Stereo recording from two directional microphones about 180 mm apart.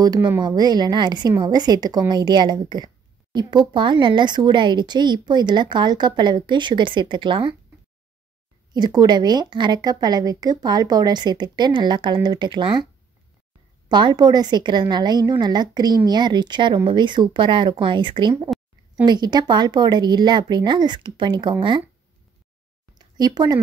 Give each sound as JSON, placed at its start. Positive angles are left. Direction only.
{"t": 0.0, "sound": "a woman's voice", "side_deg": -20}
{"t": 8.7, "sound": "a woman's voice", "side_deg": -25}
{"t": 13.8, "sound": "a woman's voice", "side_deg": -25}
{"t": 22.9, "sound": "a sound", "side_deg": -20}